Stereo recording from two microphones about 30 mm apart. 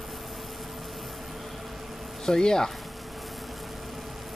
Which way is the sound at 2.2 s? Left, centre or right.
Centre.